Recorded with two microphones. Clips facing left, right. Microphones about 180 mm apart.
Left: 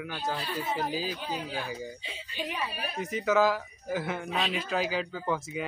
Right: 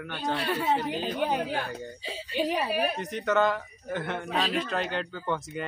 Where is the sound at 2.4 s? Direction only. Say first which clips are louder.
Right 7 dB; 35° right (ahead or behind).